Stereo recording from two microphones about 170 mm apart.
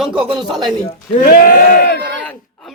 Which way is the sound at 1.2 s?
60° left (ahead or behind).